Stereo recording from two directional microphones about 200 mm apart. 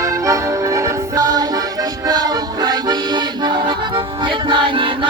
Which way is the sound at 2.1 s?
20° right (ahead or behind).